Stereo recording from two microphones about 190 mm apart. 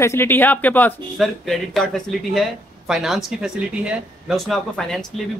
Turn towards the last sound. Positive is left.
turn(degrees=0)  # may be behind; listen again after turning